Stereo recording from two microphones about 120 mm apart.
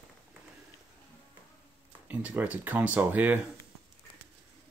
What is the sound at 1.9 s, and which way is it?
Speech, 15° right (ahead or behind).